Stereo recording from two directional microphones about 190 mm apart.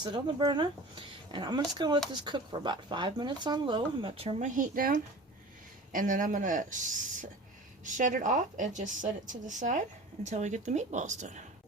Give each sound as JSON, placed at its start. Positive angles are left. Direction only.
{"t": 0.0, "sound": "speech", "side_deg": -25}
{"t": 5.9, "sound": "a woman's voice", "side_deg": -45}